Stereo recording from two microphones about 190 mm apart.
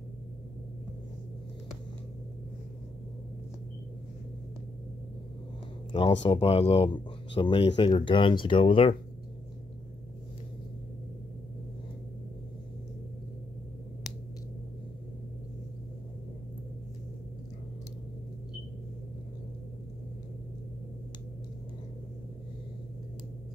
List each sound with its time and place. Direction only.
5.9 s speech: 30° left (ahead or behind)